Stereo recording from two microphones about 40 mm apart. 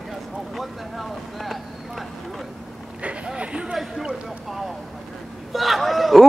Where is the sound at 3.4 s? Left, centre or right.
Right.